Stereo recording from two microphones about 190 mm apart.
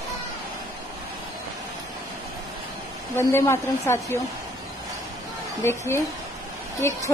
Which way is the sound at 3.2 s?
15° left (ahead or behind).